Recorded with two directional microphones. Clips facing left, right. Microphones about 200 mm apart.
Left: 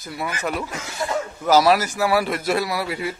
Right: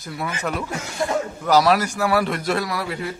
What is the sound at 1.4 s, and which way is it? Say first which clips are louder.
Speech: left 1 dB; 5° left (ahead or behind).